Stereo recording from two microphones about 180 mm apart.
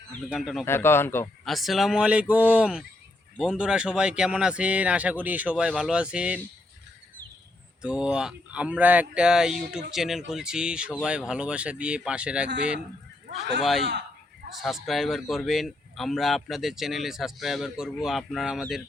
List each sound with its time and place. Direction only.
0.1 s a man's voice: centre (ahead or behind)
0.6 s speech: 15° left (ahead or behind)
1.5 s a man's voice: centre (ahead or behind)
7.8 s a man's voice: 5° right (ahead or behind)
13.2 s speech: 65° right (ahead or behind)
13.6 s a man's voice: centre (ahead or behind)